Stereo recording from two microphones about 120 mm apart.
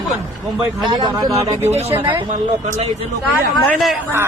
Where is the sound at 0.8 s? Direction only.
40° right (ahead or behind); by 2.1 s 20° right (ahead or behind).